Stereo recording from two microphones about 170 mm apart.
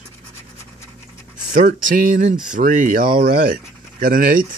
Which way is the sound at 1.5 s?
50° right (ahead or behind).